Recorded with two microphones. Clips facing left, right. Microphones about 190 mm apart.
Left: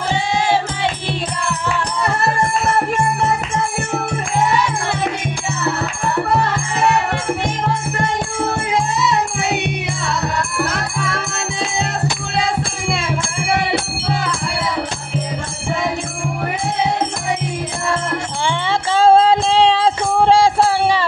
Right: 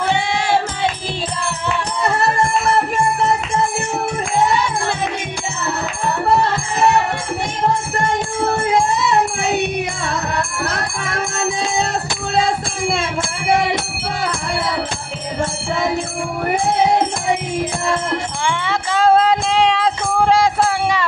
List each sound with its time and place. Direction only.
18.4 s music: 30° left (ahead or behind)